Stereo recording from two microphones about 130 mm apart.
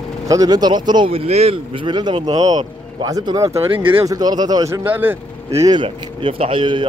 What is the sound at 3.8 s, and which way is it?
Speech, 40° right (ahead or behind).